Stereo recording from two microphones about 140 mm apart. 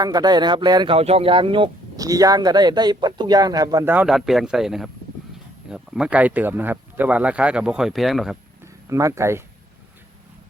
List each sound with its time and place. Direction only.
0.0 s speech: 30° right (ahead or behind)
0.9 s speech: 45° right (ahead or behind)
2.0 s speech: 25° right (ahead or behind)
3.8 s speech: 10° right (ahead or behind)
4.1 s speech: centre (ahead or behind)
8.6 s speech: 20° right (ahead or behind)